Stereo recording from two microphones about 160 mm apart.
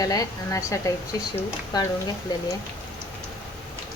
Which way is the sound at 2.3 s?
20° left (ahead or behind).